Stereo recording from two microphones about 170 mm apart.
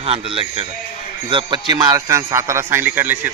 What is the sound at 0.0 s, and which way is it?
A man's voice, 35° right (ahead or behind).